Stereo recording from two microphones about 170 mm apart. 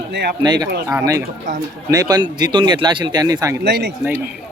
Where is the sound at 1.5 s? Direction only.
45° right (ahead or behind).